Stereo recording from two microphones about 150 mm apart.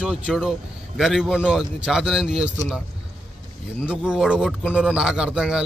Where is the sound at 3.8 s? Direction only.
5° right (ahead or behind).